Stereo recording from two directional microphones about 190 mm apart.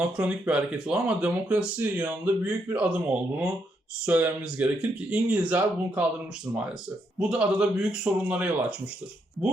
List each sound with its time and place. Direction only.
0.0 s speech: 5° right (ahead or behind)
7.2 s a man's voice: 5° right (ahead or behind)